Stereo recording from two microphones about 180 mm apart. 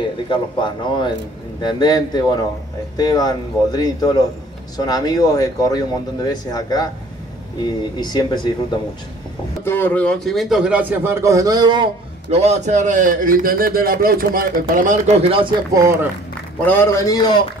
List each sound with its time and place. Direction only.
0.3 s speech: 25° left (ahead or behind)
8.0 s speech: 25° left (ahead or behind)
9.7 s a man's voice: 10° left (ahead or behind); by 15.5 s 30° right (ahead or behind)
15.7 s speech: 15° right (ahead or behind)
16.6 s a man's voice: 10° left (ahead or behind)